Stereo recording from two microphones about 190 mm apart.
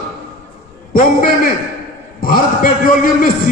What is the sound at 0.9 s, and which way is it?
A man's voice, 45° left (ahead or behind).